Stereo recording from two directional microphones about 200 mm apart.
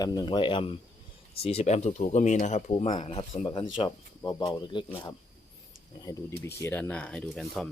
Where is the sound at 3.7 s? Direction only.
25° left (ahead or behind).